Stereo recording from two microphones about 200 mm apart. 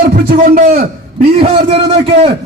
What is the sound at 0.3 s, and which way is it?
Speech, 50° right (ahead or behind).